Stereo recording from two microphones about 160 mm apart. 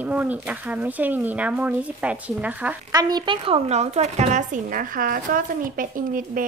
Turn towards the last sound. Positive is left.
turn(degrees=-60)  # may be behind; listen again after turning